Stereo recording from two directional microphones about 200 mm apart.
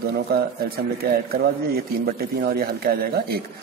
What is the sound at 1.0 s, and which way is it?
Speech, 50° right (ahead or behind).